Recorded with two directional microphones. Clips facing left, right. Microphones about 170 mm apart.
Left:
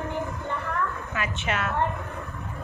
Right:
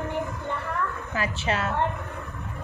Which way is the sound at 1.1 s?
35° right (ahead or behind).